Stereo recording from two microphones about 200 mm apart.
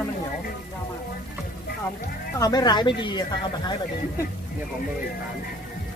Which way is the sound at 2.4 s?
20° left (ahead or behind).